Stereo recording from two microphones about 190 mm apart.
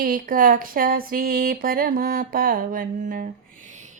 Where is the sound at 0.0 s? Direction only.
50° right (ahead or behind).